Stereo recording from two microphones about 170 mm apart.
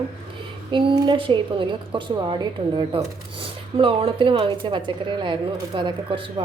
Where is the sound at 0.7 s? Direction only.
30° right (ahead or behind).